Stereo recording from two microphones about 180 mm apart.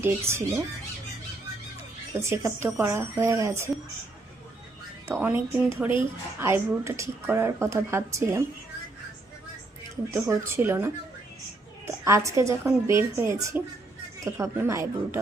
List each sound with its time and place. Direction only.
0.0 s speech: 15° right (ahead or behind)
2.1 s speech: 15° right (ahead or behind)
5.2 s speech: 10° right (ahead or behind)
10.1 s speech: 15° right (ahead or behind)